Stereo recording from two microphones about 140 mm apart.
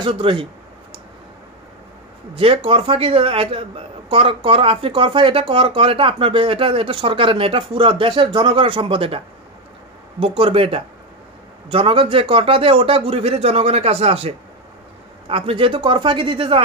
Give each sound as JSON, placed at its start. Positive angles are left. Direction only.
{"t": 0.0, "sound": "a man's voice", "side_deg": -40}
{"t": 2.3, "sound": "a man's voice", "side_deg": -40}
{"t": 10.2, "sound": "a man's voice", "side_deg": -40}